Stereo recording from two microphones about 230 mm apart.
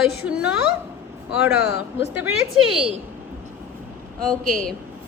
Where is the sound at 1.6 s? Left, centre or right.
Left.